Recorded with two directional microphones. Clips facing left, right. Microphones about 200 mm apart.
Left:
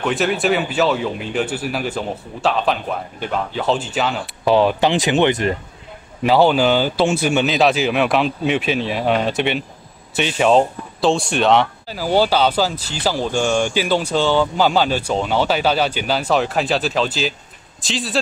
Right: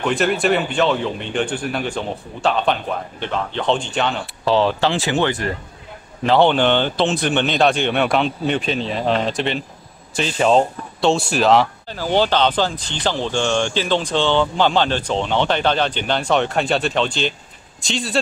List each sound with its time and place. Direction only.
0.0 s speech: centre (ahead or behind)
4.5 s speech: 15° left (ahead or behind)
6.2 s speech: 5° left (ahead or behind)